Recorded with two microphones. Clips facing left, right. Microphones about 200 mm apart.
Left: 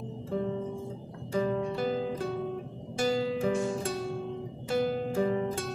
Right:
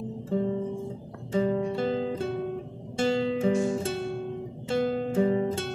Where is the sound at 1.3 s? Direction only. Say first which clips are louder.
Right 3 dB; 30° right (ahead or behind).